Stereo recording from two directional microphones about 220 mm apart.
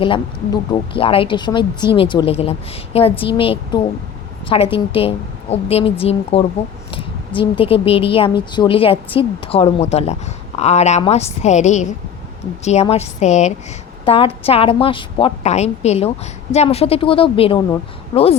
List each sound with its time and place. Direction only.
0.0 s a woman's voice: 20° left (ahead or behind)